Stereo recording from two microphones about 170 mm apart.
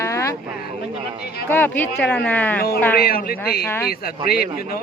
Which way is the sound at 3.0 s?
65° left (ahead or behind).